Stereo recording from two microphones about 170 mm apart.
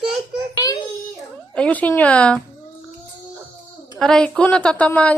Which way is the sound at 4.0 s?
5° left (ahead or behind).